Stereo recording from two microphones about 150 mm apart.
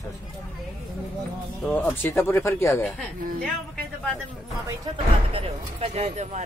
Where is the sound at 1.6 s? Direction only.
10° left (ahead or behind).